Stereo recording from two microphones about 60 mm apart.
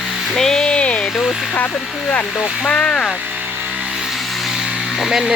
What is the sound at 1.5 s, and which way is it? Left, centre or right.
Speech, left.